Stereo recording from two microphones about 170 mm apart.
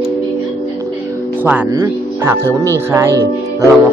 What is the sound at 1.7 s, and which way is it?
Speech, 20° right (ahead or behind).